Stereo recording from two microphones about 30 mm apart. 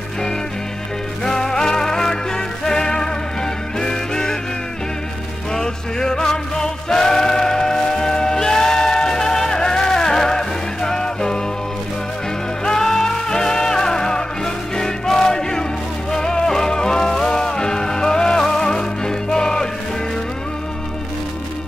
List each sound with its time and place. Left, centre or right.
1.2 s music: left
5.5 s music: centre
12.6 s music: centre